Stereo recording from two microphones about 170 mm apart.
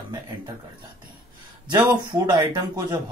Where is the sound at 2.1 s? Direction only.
25° right (ahead or behind).